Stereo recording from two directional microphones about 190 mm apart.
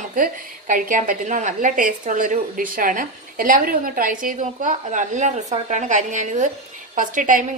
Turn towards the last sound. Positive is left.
turn(degrees=-45)  # may be behind; listen again after turning